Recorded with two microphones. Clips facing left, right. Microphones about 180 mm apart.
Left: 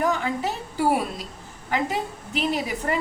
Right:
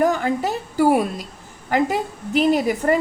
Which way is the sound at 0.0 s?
45° right (ahead or behind).